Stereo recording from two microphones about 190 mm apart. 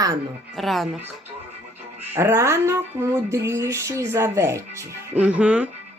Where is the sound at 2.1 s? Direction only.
15° right (ahead or behind).